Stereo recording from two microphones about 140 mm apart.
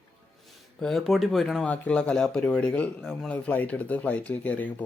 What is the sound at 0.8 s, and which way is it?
Speech, centre (ahead or behind).